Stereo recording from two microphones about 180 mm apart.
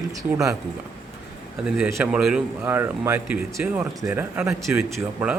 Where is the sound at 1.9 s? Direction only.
5° right (ahead or behind).